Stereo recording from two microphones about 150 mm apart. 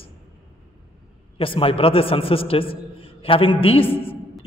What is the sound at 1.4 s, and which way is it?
A man's voice, 35° left (ahead or behind).